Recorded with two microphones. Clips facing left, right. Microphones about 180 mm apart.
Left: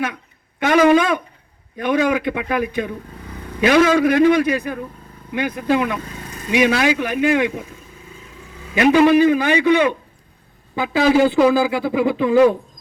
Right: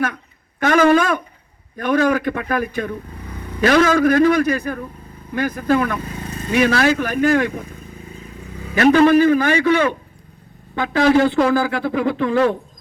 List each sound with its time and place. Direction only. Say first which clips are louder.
0.6 s a man's voice: even; 15° left (ahead or behind)
8.7 s a man's voice: right 1 dB; 15° left (ahead or behind)